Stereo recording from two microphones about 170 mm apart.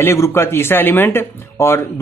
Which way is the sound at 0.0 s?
15° left (ahead or behind).